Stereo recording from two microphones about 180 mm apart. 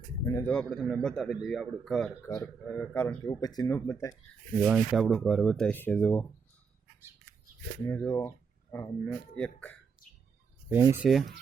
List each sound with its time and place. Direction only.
0.3 s a man's voice: 15° left (ahead or behind)
2.2 s speech: 15° left (ahead or behind)
4.6 s a man's voice: 5° right (ahead or behind)
7.9 s speech: 15° left (ahead or behind)
10.7 s speech: 10° right (ahead or behind)